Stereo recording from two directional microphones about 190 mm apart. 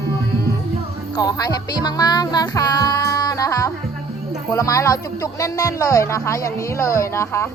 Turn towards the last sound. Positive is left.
turn(degrees=15)  # may be behind; listen again after turning